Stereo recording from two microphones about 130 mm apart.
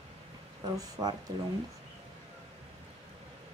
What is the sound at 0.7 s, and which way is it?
Speech, 25° right (ahead or behind).